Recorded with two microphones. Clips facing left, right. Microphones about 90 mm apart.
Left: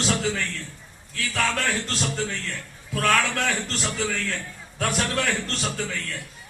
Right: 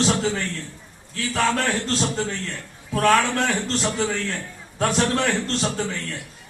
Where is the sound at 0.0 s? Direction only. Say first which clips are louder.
Right 3 dB; 30° right (ahead or behind).